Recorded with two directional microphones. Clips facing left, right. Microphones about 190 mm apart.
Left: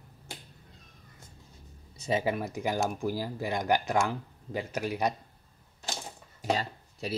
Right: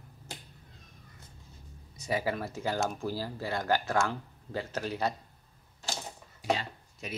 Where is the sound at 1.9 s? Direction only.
25° left (ahead or behind).